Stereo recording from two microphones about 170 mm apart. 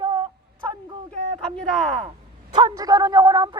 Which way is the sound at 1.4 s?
5° left (ahead or behind).